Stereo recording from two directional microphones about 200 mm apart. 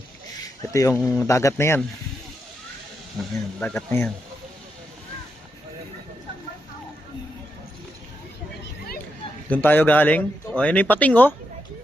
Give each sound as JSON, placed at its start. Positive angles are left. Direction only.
{"t": 0.7, "sound": "speech", "side_deg": 15}
{"t": 3.6, "sound": "speech", "side_deg": 5}
{"t": 9.5, "sound": "speech", "side_deg": 10}